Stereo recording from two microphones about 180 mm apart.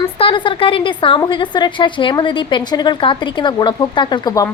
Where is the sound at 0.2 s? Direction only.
30° left (ahead or behind).